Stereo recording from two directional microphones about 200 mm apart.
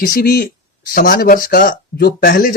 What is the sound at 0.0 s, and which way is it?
Speech, 45° left (ahead or behind).